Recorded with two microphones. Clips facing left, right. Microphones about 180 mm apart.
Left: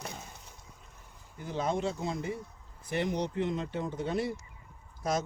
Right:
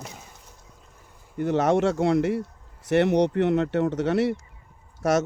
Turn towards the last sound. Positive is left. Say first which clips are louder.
# right 9 dB
turn(degrees=-80)